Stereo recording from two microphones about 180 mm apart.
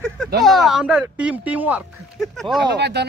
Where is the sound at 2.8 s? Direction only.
70° right (ahead or behind).